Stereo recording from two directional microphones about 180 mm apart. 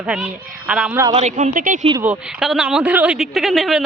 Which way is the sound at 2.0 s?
5° right (ahead or behind).